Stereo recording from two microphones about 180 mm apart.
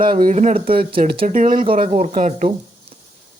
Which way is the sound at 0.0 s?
55° right (ahead or behind).